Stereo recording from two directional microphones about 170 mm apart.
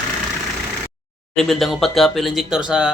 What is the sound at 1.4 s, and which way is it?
Speech, centre (ahead or behind).